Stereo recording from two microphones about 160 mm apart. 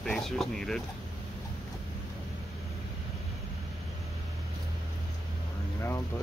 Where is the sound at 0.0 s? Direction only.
5° left (ahead or behind).